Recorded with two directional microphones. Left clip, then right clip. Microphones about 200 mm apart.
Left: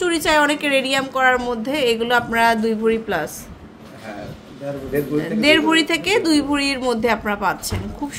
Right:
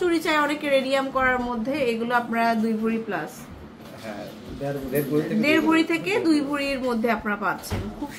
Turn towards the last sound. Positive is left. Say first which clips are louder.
# left 5 dB
turn(degrees=45)  # may be behind; listen again after turning